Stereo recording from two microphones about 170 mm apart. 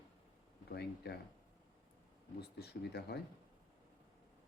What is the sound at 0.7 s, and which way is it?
Speech, 70° left (ahead or behind).